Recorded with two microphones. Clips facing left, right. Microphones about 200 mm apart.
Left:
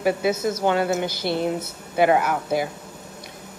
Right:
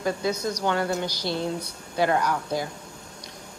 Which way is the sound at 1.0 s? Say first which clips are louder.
Left 4 dB; 55° left (ahead or behind).